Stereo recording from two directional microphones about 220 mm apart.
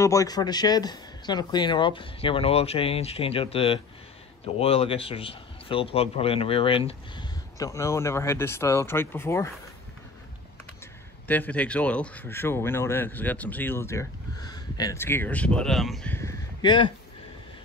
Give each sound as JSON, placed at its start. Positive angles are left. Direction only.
{"t": 0.0, "sound": "a man's voice", "side_deg": 15}
{"t": 7.5, "sound": "speech", "side_deg": 15}
{"t": 11.2, "sound": "speech", "side_deg": 5}